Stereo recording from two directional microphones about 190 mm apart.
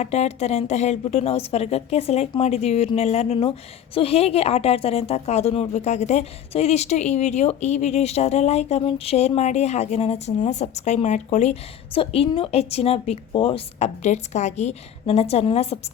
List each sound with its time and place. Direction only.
0.0 s a woman's voice: 35° left (ahead or behind)